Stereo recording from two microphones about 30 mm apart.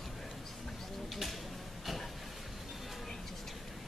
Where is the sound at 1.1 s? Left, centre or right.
Centre.